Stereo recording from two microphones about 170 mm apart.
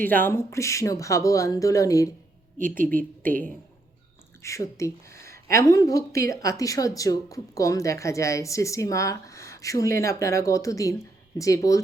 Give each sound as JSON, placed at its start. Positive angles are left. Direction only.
{"t": 0.0, "sound": "speech", "side_deg": 10}
{"t": 2.6, "sound": "a woman's voice", "side_deg": -50}
{"t": 2.8, "sound": "a woman's voice", "side_deg": 10}
{"t": 4.4, "sound": "speech", "side_deg": 20}